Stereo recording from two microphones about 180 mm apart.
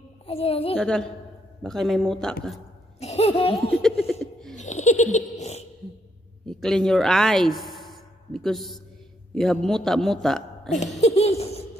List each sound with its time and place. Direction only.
0.3 s a sound: 35° left (ahead or behind)
0.7 s a man's voice: 5° left (ahead or behind)
3.0 s speech: 35° left (ahead or behind)
4.1 s laughter: centre (ahead or behind)
4.6 s giggle: 40° left (ahead or behind)
6.4 s a woman's voice: 5° left (ahead or behind)
11.0 s a sound: 35° left (ahead or behind)